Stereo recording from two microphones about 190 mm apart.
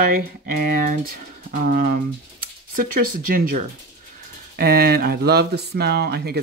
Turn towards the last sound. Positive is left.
turn(degrees=-55)  # may be behind; listen again after turning